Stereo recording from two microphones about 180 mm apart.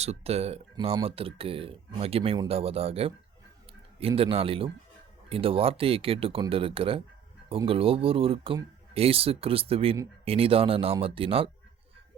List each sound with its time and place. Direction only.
0.0 s speech: 35° right (ahead or behind)